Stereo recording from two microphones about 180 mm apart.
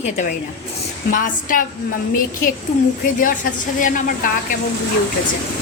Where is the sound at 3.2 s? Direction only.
45° left (ahead or behind).